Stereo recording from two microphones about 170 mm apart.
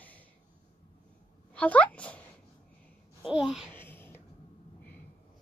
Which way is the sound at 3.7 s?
10° left (ahead or behind).